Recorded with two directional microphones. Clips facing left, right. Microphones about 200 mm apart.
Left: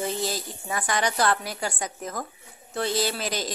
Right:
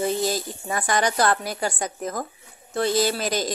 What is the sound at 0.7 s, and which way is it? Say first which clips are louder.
A woman's voice: right 3 dB; 45° right (ahead or behind).